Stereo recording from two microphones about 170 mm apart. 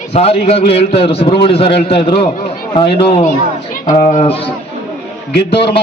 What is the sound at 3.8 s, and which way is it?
Speech, 45° left (ahead or behind).